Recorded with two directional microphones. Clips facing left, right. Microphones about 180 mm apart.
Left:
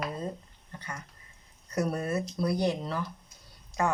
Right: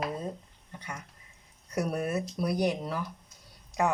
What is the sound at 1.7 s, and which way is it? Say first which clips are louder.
Speech: even; 10° right (ahead or behind).